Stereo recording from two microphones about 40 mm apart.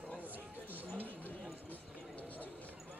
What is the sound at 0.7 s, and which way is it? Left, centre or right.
Chatter, right.